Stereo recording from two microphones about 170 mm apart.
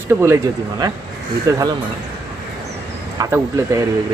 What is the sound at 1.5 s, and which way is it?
Speech, 20° right (ahead or behind).